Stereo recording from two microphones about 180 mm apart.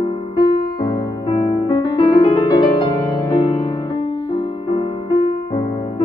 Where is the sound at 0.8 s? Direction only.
20° left (ahead or behind).